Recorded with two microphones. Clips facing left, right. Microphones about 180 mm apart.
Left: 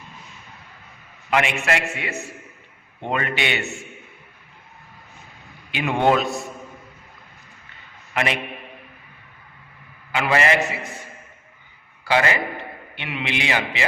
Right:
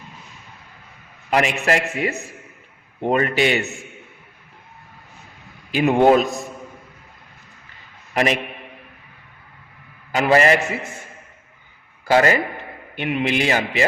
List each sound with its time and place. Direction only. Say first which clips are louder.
1.3 s a man's voice: right 3 dB; 40° right (ahead or behind)
5.7 s a man's voice: right 5 dB; 40° right (ahead or behind)
8.1 s a man's voice: right 4 dB; 40° right (ahead or behind)
10.2 s a man's voice: right 4 dB; 40° right (ahead or behind)
12.0 s a man's voice: right 4 dB; 45° right (ahead or behind)